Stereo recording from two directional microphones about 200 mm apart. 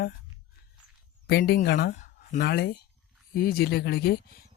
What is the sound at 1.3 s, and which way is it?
A man's voice, 55° left (ahead or behind).